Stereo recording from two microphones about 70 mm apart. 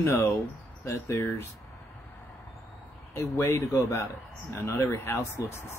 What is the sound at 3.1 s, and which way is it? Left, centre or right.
Speech, left.